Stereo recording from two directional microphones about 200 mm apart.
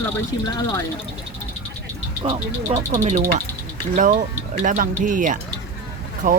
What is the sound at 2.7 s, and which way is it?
Speech, 30° right (ahead or behind).